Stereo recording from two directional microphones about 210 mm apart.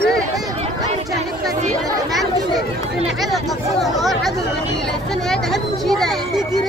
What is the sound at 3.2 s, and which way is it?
Chatter, centre (ahead or behind).